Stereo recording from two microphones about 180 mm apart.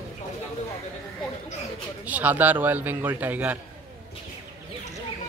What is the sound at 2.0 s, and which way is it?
Speech, 10° right (ahead or behind).